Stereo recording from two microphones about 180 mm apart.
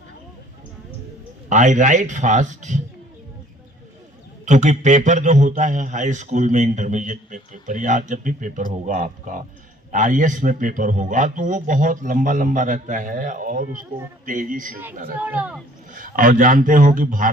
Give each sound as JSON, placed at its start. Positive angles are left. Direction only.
{"t": 1.5, "sound": "a man's voice", "side_deg": -45}
{"t": 4.4, "sound": "a man's voice", "side_deg": -40}
{"t": 15.2, "sound": "speech", "side_deg": -10}
{"t": 16.0, "sound": "a man's voice", "side_deg": -50}